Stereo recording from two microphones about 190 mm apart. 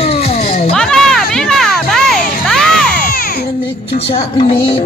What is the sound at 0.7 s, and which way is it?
Music, 5° left (ahead or behind).